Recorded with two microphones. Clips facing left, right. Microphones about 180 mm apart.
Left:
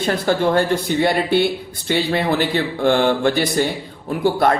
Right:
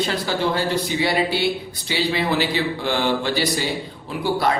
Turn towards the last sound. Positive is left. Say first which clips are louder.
# left 4 dB
turn(degrees=50)  # may be behind; listen again after turning